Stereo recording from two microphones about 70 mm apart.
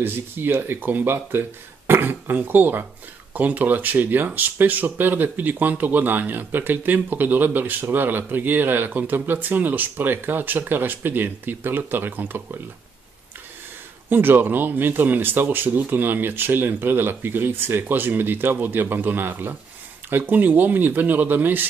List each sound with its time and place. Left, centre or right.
0.0 s speech: right
14.0 s speech: right